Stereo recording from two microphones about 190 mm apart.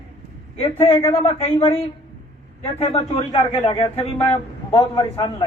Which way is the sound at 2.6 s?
35° left (ahead or behind).